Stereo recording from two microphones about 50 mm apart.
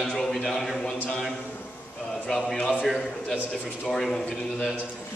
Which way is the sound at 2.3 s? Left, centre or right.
Centre.